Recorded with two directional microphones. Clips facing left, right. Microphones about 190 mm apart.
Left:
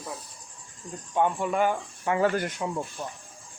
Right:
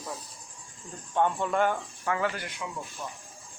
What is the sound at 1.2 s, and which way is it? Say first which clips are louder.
Speech: left 1 dB; 10° left (ahead or behind).